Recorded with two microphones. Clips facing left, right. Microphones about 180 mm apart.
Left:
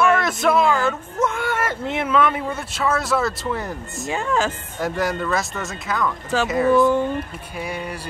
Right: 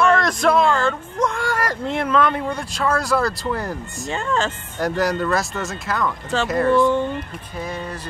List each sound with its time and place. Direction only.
0.0 s speech: 5° left (ahead or behind)